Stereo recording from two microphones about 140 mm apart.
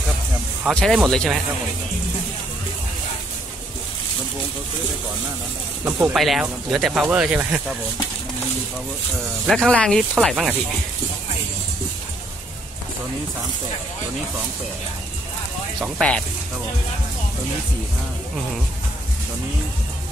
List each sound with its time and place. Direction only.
0.7 s speech: centre (ahead or behind)
5.9 s speech: 15° right (ahead or behind)
6.1 s speech: centre (ahead or behind)
9.5 s speech: 5° left (ahead or behind)